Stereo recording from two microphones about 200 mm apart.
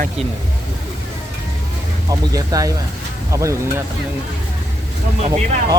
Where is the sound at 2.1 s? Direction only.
15° right (ahead or behind).